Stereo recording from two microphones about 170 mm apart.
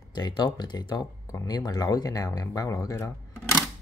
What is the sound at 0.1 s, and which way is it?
Speech, 25° left (ahead or behind).